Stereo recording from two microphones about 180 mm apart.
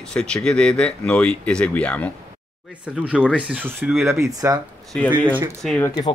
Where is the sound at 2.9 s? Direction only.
5° right (ahead or behind).